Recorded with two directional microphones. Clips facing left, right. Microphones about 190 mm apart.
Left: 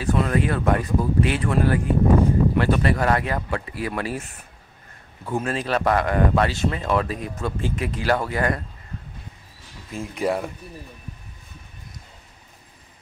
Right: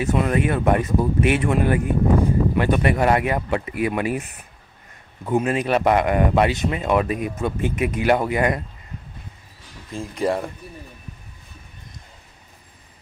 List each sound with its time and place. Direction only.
0.0 s speech: 20° right (ahead or behind)
10.1 s speech: centre (ahead or behind)